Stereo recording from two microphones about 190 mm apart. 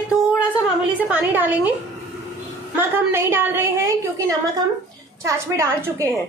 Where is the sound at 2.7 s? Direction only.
10° right (ahead or behind).